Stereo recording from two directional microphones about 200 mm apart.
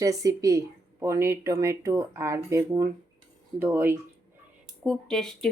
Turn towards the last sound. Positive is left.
turn(degrees=5)  # may be behind; listen again after turning